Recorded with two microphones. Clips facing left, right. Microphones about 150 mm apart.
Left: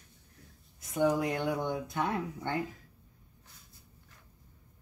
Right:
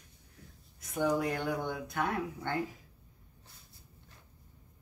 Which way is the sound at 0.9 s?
25° left (ahead or behind).